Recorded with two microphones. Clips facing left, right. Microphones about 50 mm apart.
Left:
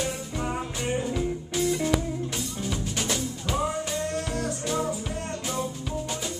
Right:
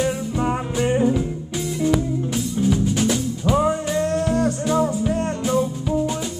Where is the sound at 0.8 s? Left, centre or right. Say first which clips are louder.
Right 11 dB; right.